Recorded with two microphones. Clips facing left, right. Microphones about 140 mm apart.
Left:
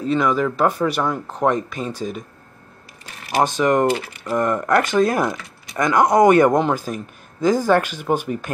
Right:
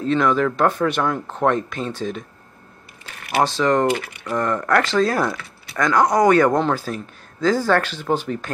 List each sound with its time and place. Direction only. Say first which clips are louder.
0.0 s speech: right 1 dB; 5° left (ahead or behind)
3.4 s speech: left 1 dB; 15° left (ahead or behind)
4.0 s speech: left 2 dB; 5° left (ahead or behind)
4.4 s speech: left 1 dB; 20° left (ahead or behind)